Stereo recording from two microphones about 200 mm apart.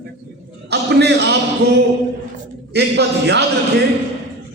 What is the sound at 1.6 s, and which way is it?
A man's voice, 55° right (ahead or behind).